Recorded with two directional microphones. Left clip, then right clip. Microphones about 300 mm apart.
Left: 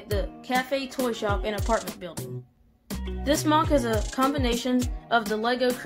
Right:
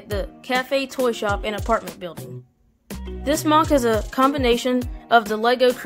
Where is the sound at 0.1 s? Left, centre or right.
Right.